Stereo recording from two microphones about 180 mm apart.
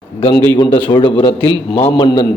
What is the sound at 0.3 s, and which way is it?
A man's voice, 25° left (ahead or behind).